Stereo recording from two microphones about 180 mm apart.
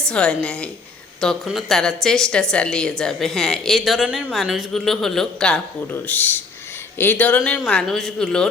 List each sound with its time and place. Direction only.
0.1 s a woman's voice: 5° left (ahead or behind)